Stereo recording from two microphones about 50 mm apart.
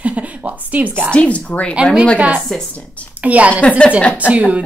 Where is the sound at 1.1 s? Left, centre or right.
Left.